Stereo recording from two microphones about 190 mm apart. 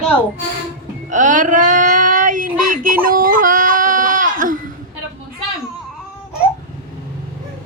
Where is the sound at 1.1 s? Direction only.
40° right (ahead or behind).